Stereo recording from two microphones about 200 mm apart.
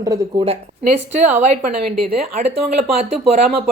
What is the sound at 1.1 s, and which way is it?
A woman's voice, 35° right (ahead or behind).